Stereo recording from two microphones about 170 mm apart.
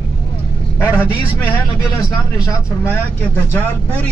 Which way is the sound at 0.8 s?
10° left (ahead or behind).